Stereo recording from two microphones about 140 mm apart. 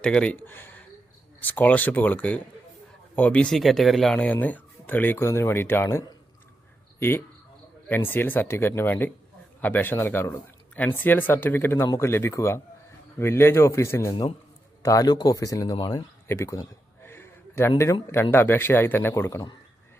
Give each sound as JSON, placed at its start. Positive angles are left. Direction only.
{"t": 0.0, "sound": "speech", "side_deg": 10}
{"t": 7.9, "sound": "a man's voice", "side_deg": 15}
{"t": 15.7, "sound": "a sound", "side_deg": 30}
{"t": 18.0, "sound": "speech", "side_deg": 15}